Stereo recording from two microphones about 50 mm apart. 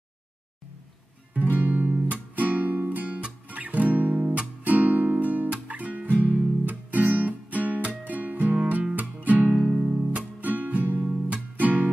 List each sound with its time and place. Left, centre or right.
1.3 s music: right
9.7 s music: centre
10.4 s music: right
11.1 s music: right